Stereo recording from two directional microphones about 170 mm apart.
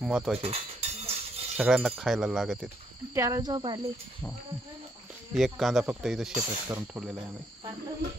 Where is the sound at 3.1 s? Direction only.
20° right (ahead or behind).